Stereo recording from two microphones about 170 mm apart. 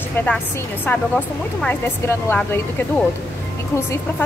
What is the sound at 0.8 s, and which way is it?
A woman's voice, 10° left (ahead or behind).